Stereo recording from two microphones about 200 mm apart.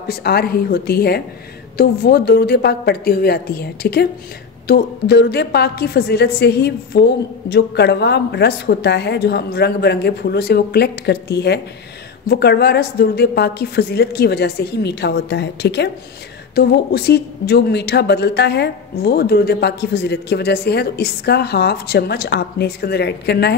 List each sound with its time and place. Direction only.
0.1 s a woman's voice: 50° left (ahead or behind)